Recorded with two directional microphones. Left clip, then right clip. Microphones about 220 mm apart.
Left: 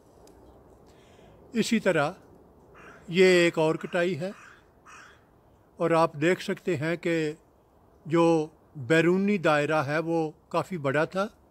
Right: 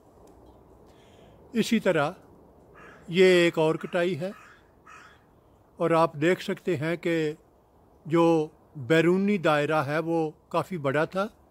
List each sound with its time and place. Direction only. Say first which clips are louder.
0.8 s a sound: even; centre (ahead or behind)
3.1 s a man's voice: right 1 dB; centre (ahead or behind)
4.4 s crow: left 1 dB; 25° left (ahead or behind)
5.8 s a man's voice: right 1 dB; centre (ahead or behind)